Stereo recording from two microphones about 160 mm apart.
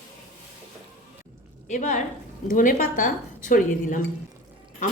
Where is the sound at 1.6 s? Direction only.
50° left (ahead or behind).